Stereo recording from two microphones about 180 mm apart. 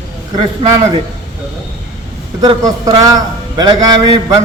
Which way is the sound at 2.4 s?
20° right (ahead or behind).